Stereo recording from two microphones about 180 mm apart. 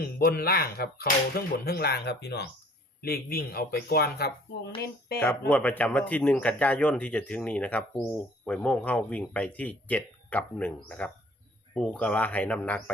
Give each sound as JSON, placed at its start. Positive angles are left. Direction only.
{"t": 0.0, "sound": "speech", "side_deg": 55}
{"t": 5.2, "sound": "a man's voice", "side_deg": 10}